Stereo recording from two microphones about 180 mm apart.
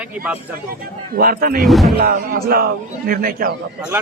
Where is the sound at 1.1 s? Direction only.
55° right (ahead or behind).